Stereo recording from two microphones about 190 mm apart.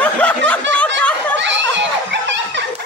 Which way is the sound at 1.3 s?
70° right (ahead or behind).